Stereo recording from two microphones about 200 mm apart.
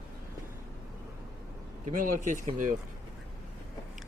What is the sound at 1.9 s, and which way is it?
Speech, 40° right (ahead or behind).